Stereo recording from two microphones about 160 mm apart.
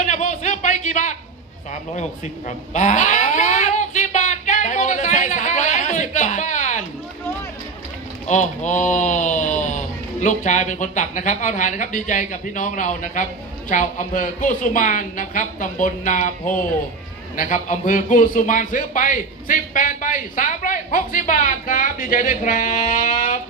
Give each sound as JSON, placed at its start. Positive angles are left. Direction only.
{"t": 0.0, "sound": "a sound", "side_deg": 50}
{"t": 2.7, "sound": "child singing", "side_deg": 50}
{"t": 8.3, "sound": "speech", "side_deg": 50}
{"t": 17.3, "sound": "speech", "side_deg": 55}